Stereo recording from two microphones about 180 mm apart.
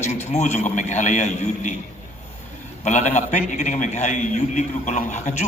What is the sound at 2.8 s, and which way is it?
A man's voice, 40° left (ahead or behind).